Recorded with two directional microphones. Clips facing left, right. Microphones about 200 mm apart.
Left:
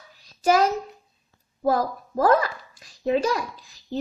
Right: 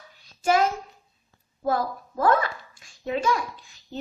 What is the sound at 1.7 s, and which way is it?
A child's voice, 40° left (ahead or behind).